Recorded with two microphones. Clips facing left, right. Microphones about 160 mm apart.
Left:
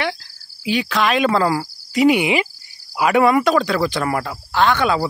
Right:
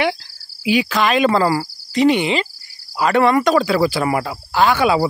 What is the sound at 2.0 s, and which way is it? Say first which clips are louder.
Cricket: left 1 dB; 10° left (ahead or behind).